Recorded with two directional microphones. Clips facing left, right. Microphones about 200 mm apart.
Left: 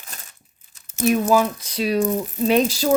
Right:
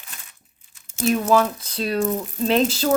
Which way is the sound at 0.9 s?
10° left (ahead or behind).